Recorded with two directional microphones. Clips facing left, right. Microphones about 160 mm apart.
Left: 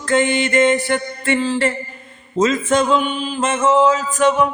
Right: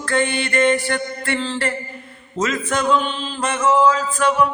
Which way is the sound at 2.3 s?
25° left (ahead or behind).